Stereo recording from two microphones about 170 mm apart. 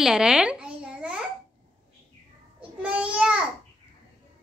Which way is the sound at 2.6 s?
5° right (ahead or behind).